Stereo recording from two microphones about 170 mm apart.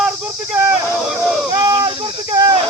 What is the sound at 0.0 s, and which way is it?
Cricket, 5° right (ahead or behind).